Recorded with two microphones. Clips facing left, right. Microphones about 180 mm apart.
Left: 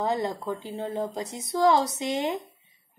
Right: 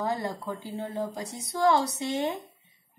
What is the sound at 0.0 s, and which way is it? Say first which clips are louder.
A woman's voice: left 3 dB; 20° left (ahead or behind).